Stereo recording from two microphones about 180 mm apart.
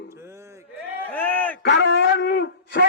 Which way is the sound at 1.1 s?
10° left (ahead or behind).